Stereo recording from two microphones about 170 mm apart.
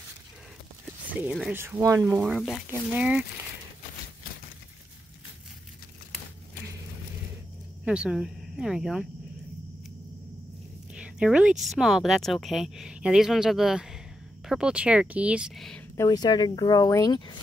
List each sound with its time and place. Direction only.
1.5 s speech: 15° right (ahead or behind)
7.8 s speech: 5° right (ahead or behind)
11.0 s speech: 5° right (ahead or behind)
16.0 s speech: 25° left (ahead or behind)